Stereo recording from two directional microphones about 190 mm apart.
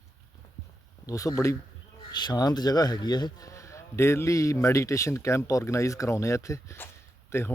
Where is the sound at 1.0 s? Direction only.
15° left (ahead or behind).